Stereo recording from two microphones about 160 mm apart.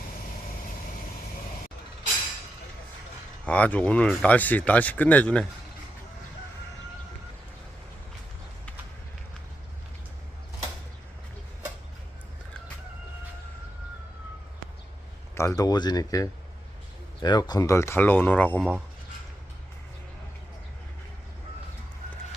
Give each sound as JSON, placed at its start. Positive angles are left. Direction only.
{"t": 3.4, "sound": "speech", "side_deg": 10}
{"t": 15.4, "sound": "speech", "side_deg": 20}